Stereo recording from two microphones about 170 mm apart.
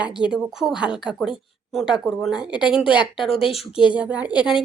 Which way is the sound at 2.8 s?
30° left (ahead or behind).